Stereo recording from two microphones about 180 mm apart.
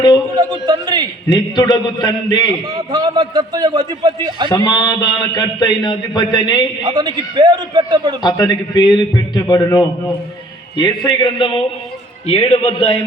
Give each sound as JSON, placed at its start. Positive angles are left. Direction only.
{"t": 0.6, "sound": "a sound", "side_deg": -25}
{"t": 1.3, "sound": "a man's voice", "side_deg": 25}
{"t": 2.6, "sound": "a man's voice", "side_deg": -20}
{"t": 4.4, "sound": "a man's voice", "side_deg": 25}
{"t": 6.8, "sound": "a man's voice", "side_deg": -25}
{"t": 8.2, "sound": "a man's voice", "side_deg": 25}